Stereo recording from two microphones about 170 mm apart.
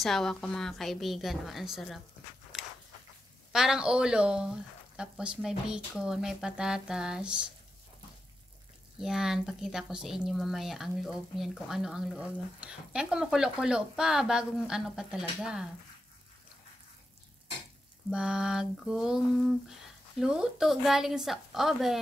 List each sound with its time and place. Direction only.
0.0 s speech: centre (ahead or behind)
3.5 s speech: 5° right (ahead or behind)
9.0 s speech: 5° right (ahead or behind)
18.1 s speech: 5° right (ahead or behind)